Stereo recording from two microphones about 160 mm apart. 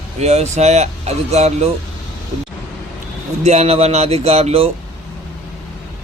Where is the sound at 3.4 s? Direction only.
40° right (ahead or behind).